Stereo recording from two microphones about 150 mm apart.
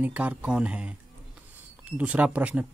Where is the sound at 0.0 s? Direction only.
10° right (ahead or behind).